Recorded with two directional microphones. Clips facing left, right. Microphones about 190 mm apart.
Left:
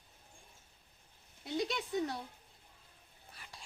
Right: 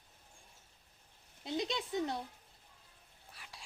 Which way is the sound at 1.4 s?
25° right (ahead or behind).